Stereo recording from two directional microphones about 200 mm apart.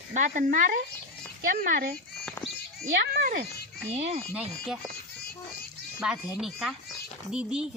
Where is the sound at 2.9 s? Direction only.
45° right (ahead or behind).